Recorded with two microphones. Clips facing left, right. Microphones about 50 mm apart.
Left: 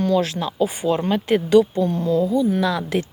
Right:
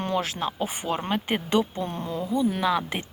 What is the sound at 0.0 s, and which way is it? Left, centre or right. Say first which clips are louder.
Speech: left 7 dB; right.